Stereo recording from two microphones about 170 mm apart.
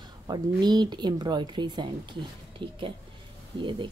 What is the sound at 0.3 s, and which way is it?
Speech, 25° right (ahead or behind).